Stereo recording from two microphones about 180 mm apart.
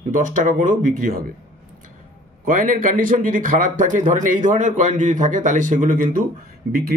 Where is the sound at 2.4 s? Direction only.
50° right (ahead or behind).